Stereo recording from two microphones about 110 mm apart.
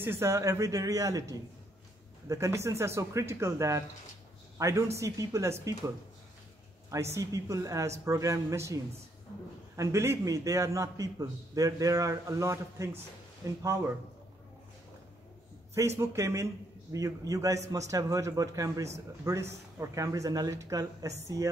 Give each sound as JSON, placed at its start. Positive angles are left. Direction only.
{"t": 0.0, "sound": "a man's voice", "side_deg": -20}
{"t": 6.9, "sound": "a man's voice", "side_deg": -25}
{"t": 16.0, "sound": "a man's voice", "side_deg": -25}